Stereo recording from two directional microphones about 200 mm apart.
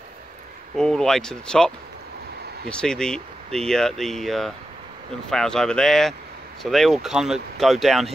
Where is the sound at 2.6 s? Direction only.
5° left (ahead or behind).